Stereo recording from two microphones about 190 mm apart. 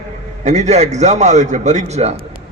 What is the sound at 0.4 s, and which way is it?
A man's voice, 35° right (ahead or behind).